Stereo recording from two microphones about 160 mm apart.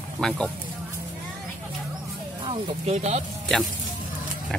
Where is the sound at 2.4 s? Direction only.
35° right (ahead or behind).